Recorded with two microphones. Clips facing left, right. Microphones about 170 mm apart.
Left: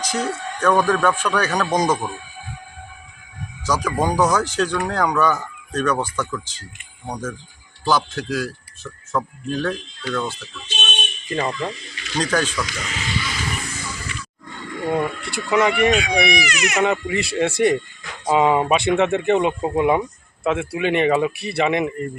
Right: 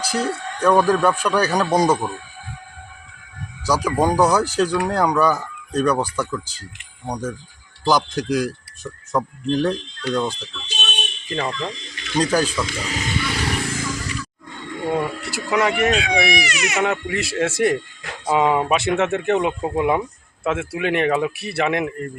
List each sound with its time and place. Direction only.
0.2 s speech: 10° right (ahead or behind)
3.7 s speech: 10° right (ahead or behind)
11.3 s speech: 5° left (ahead or behind)
12.1 s speech: 10° right (ahead or behind)
12.5 s speech: 30° right (ahead or behind)
13.2 s vehicle: 70° right (ahead or behind)
14.9 s a sound: 5° right (ahead or behind)
15.4 s speech: 5° right (ahead or behind)